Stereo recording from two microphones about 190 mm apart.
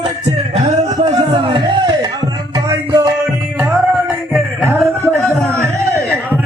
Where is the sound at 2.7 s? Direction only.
20° right (ahead or behind).